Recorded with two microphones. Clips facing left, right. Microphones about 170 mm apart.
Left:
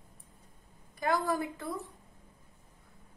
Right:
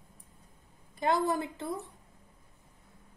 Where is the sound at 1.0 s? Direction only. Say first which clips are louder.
Right 2 dB; 25° right (ahead or behind).